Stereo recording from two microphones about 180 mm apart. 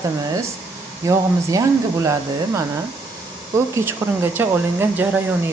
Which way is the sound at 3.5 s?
15° right (ahead or behind).